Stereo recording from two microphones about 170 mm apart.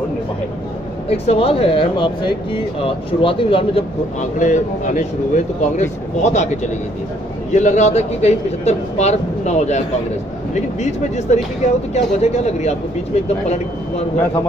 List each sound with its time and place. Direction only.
1.0 s speech: 35° left (ahead or behind)
4.2 s speech: 45° left (ahead or behind)